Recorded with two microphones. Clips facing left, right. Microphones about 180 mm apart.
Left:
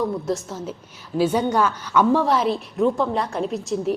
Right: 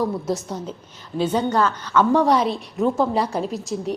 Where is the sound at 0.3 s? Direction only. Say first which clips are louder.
Even; centre (ahead or behind).